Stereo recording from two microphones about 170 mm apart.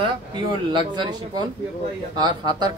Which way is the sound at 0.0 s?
25° right (ahead or behind).